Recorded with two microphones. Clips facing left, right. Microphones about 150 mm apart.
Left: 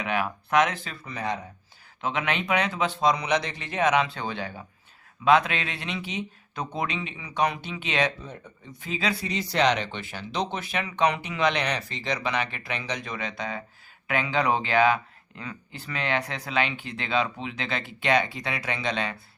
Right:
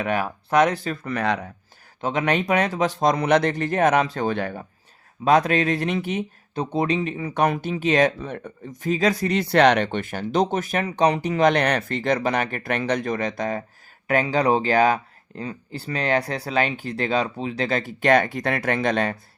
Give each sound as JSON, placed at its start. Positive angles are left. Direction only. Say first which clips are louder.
{"t": 0.0, "sound": "speech", "louder": "right 4 dB", "side_deg": -40}
{"t": 1.0, "sound": "speech", "louder": "right 6 dB", "side_deg": -70}
{"t": 2.0, "sound": "speech", "louder": "right 6 dB", "side_deg": -40}
{"t": 5.2, "sound": "speech", "louder": "right 3 dB", "side_deg": -40}
{"t": 6.5, "sound": "speech", "louder": "right 8 dB", "side_deg": -30}
{"t": 8.2, "sound": "speech", "louder": "right 9 dB", "side_deg": -65}
{"t": 8.7, "sound": "speech", "louder": "right 8 dB", "side_deg": -45}